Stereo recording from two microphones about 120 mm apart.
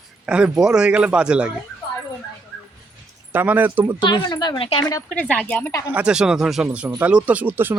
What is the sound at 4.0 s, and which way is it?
Speech, 40° left (ahead or behind).